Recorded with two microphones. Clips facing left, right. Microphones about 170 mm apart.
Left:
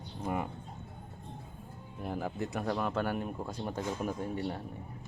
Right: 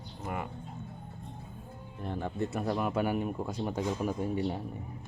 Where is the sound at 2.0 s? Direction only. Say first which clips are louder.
Right 2 dB; 5° left (ahead or behind); by 4.6 s 10° right (ahead or behind).